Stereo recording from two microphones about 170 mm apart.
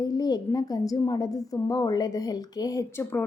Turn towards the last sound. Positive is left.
turn(degrees=15)  # may be behind; listen again after turning